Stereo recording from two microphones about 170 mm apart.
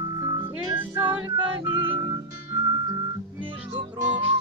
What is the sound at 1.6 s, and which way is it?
Music, 30° right (ahead or behind).